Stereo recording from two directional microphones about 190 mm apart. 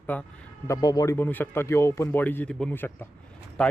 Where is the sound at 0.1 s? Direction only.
10° left (ahead or behind).